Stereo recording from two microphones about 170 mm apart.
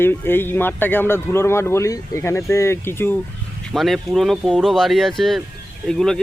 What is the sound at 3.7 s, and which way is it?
Speech, centre (ahead or behind).